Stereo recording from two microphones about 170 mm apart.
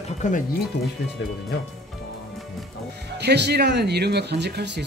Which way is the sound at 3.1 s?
80° right.